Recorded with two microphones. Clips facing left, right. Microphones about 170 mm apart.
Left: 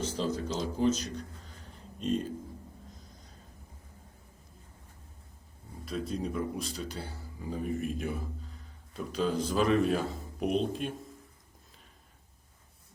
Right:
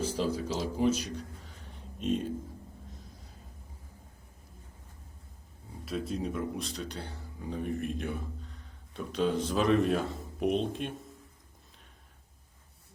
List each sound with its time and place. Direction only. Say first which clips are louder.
0.0 s speech: right 1 dB; 10° right (ahead or behind)
1.6 s a sound: right 1 dB; centre (ahead or behind)
5.8 s speech: even; centre (ahead or behind)